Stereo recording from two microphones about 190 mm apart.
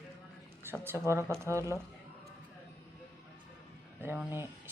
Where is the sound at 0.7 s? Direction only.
10° right (ahead or behind).